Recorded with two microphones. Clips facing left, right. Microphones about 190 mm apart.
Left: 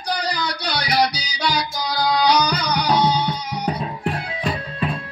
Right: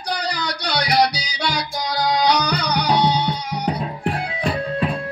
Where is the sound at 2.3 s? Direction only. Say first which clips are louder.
Left 1 dB; 65° right (ahead or behind).